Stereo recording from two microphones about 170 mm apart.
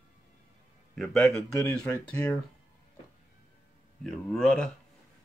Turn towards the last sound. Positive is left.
turn(degrees=5)  # may be behind; listen again after turning